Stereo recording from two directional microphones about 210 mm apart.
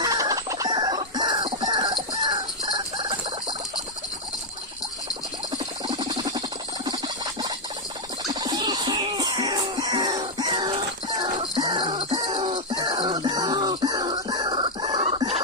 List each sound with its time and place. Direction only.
0.0 s chicken: 15° right (ahead or behind)
5.9 s a sound: 20° right (ahead or behind)
8.3 s music: 20° right (ahead or behind)